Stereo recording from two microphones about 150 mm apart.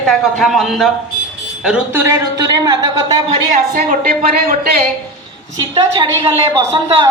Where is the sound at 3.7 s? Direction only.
70° right (ahead or behind).